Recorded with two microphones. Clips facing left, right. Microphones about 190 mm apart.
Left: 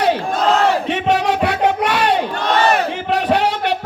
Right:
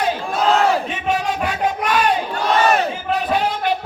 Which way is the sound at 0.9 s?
70° left (ahead or behind).